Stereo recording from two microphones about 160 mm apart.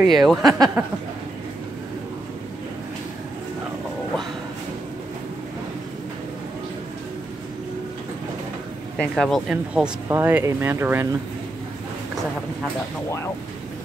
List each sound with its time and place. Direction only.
0.0 s speech: centre (ahead or behind)
0.4 s speech: 25° right (ahead or behind)
8.9 s speech: 5° left (ahead or behind)
10.0 s speech: 15° right (ahead or behind)